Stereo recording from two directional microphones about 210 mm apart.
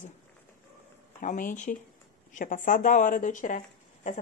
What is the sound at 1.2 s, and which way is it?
Speech, 40° left (ahead or behind).